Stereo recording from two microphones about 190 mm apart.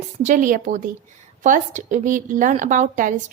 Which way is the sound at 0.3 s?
45° right (ahead or behind).